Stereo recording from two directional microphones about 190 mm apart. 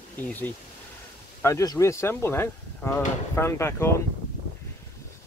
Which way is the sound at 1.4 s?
15° left (ahead or behind).